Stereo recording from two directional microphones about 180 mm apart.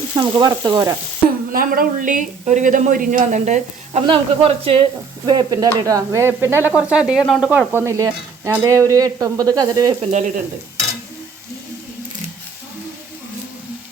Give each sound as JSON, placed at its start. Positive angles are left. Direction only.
{"t": 0.2, "sound": "speech", "side_deg": -25}
{"t": 1.5, "sound": "speech", "side_deg": -55}
{"t": 4.0, "sound": "speech", "side_deg": -30}
{"t": 7.3, "sound": "stir", "side_deg": -5}
{"t": 10.0, "sound": "speech", "side_deg": -40}